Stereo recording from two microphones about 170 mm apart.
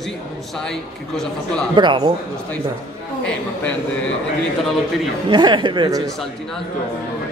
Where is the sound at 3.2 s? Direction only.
5° left (ahead or behind).